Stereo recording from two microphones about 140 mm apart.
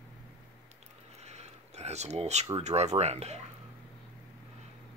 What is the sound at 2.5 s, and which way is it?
Speech, 50° right (ahead or behind).